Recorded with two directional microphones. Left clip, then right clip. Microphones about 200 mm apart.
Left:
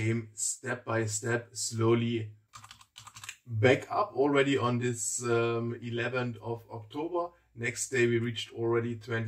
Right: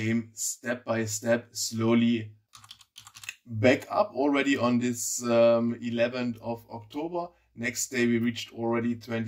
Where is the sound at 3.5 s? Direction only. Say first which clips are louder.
Right 3 dB; 35° right (ahead or behind).